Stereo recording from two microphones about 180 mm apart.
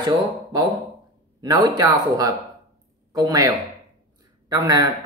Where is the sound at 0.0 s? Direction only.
20° right (ahead or behind).